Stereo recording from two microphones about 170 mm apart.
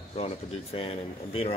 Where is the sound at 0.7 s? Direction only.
35° left (ahead or behind).